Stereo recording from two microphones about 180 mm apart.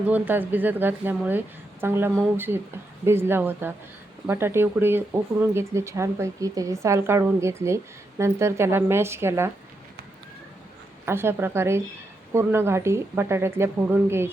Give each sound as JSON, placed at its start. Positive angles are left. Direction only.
{"t": 0.1, "sound": "speech", "side_deg": -10}
{"t": 11.0, "sound": "speech", "side_deg": -15}